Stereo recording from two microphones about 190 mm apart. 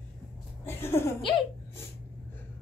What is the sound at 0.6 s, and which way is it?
Laughter, 15° left (ahead or behind).